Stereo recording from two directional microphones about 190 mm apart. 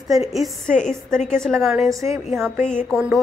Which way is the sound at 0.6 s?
40° left (ahead or behind).